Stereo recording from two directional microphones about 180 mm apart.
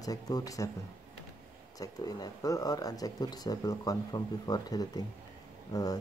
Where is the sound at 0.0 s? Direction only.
20° left (ahead or behind).